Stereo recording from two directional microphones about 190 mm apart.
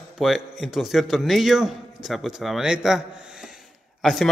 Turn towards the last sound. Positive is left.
turn(degrees=0)  # may be behind; listen again after turning